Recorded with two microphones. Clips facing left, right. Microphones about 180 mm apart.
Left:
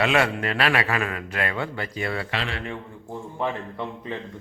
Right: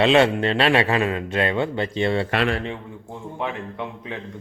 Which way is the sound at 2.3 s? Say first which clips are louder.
Right 8 dB; 55° right (ahead or behind).